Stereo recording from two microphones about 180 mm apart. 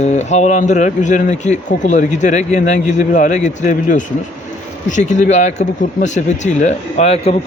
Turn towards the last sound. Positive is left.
turn(degrees=35)  # may be behind; listen again after turning